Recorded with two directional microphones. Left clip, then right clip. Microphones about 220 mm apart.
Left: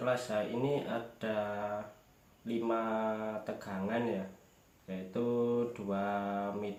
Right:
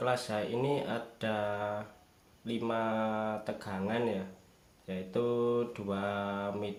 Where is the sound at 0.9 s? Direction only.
50° right (ahead or behind).